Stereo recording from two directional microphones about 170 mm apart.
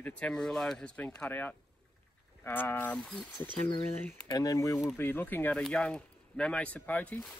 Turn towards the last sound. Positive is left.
turn(degrees=10)  # may be behind; listen again after turning